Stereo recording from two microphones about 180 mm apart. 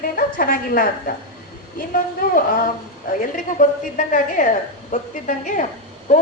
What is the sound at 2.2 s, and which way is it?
A woman's voice, 55° left (ahead or behind).